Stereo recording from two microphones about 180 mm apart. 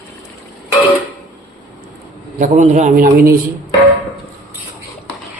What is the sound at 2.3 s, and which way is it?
Speech, 40° right (ahead or behind).